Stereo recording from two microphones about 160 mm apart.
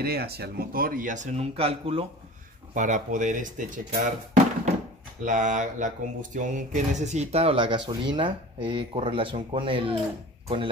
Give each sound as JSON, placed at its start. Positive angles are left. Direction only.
{"t": 0.0, "sound": "a man's voice", "side_deg": -80}
{"t": 2.7, "sound": "speech", "side_deg": -50}